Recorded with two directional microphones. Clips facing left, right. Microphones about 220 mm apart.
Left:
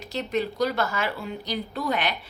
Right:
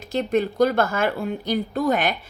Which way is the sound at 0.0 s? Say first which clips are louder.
Right 5 dB; 50° right (ahead or behind).